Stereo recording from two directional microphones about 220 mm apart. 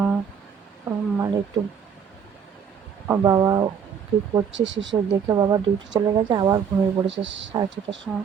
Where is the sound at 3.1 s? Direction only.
15° right (ahead or behind).